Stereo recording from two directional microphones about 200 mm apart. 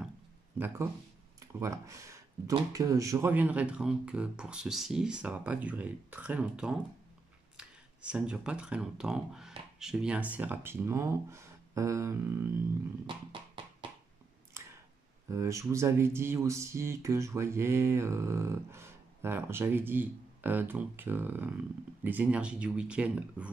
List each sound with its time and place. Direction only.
1.6 s speech: 15° right (ahead or behind)
13.0 s a sound: 25° right (ahead or behind)
15.2 s speech: 15° right (ahead or behind)